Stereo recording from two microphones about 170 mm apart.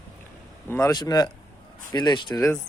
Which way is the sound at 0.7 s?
20° left (ahead or behind).